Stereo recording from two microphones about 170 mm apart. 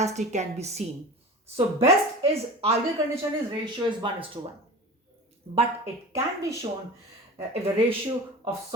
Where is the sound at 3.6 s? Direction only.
30° right (ahead or behind).